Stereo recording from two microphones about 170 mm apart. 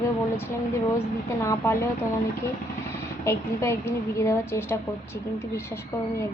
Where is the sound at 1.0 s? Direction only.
15° left (ahead or behind).